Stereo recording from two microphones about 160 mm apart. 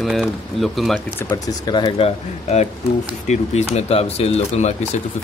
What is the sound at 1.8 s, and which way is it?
Speech, 40° left (ahead or behind).